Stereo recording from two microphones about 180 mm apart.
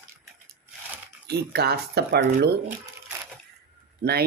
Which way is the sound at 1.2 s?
65° right (ahead or behind).